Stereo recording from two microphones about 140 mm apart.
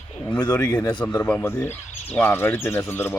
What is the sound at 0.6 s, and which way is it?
Speech, 30° left (ahead or behind).